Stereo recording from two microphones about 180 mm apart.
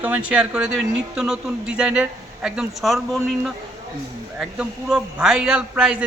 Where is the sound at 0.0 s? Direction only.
10° right (ahead or behind).